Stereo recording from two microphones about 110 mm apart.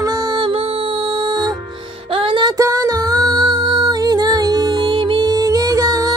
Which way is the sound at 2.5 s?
30° right (ahead or behind).